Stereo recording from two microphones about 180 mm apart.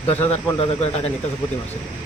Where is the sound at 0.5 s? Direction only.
35° left (ahead or behind).